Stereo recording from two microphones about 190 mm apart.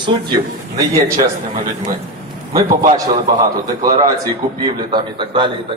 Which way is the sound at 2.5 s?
45° right (ahead or behind).